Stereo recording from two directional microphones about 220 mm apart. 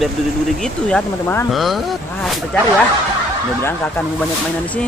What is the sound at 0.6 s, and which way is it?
Speech, 5° left (ahead or behind).